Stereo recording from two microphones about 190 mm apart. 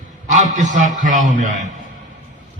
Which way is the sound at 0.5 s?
40° right (ahead or behind).